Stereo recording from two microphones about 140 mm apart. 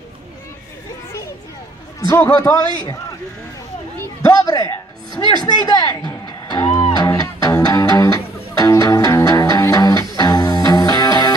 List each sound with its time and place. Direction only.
2.0 s a man's voice: 25° left (ahead or behind)
4.0 s a sound: 25° left (ahead or behind)
7.2 s music: 25° left (ahead or behind)